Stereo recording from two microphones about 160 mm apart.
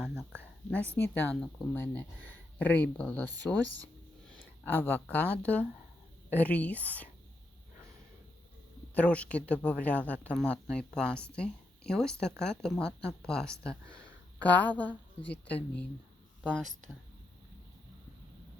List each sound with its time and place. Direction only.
0.7 s speech: 10° left (ahead or behind)
9.0 s speech: 10° left (ahead or behind)